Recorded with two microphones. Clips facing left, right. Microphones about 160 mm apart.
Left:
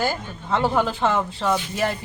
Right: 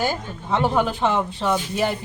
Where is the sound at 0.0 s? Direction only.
15° right (ahead or behind).